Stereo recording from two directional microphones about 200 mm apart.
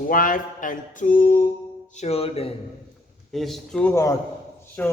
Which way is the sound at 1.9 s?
30° left (ahead or behind).